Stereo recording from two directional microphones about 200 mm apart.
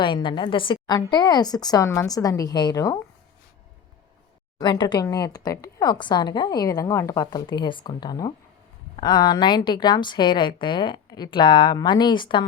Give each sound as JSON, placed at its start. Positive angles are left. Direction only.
{"t": 0.0, "sound": "a woman's voice", "side_deg": 25}
{"t": 4.6, "sound": "a woman's voice", "side_deg": 20}